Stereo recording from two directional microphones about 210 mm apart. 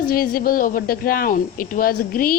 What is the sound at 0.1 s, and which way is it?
Speech, 45° left (ahead or behind).